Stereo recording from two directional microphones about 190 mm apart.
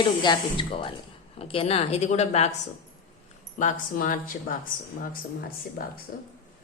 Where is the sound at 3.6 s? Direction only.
45° left (ahead or behind).